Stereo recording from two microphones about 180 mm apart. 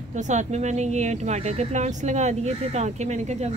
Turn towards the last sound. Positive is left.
turn(degrees=-40)  # may be behind; listen again after turning